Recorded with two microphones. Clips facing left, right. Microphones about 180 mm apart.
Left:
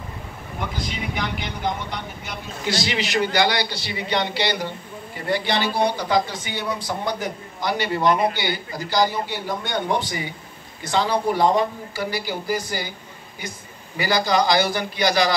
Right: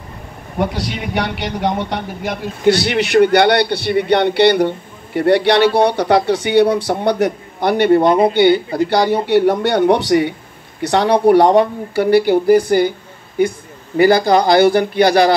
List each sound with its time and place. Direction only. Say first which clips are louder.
0.6 s a man's voice: right 9 dB; 75° right (ahead or behind)
8.1 s speech: right 7 dB; 25° right (ahead or behind)
8.4 s a man's voice: right 15 dB; 60° right (ahead or behind)